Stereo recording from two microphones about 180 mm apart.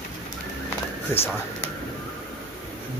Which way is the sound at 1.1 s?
15° left (ahead or behind).